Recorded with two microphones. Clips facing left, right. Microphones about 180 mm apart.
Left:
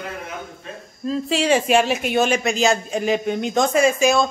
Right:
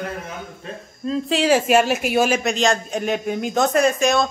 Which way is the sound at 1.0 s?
Centre (ahead or behind).